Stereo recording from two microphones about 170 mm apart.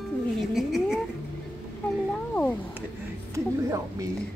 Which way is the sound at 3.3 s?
20° right (ahead or behind).